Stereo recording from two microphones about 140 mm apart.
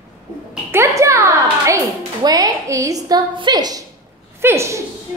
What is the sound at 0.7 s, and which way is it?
A child's voice, 20° right (ahead or behind).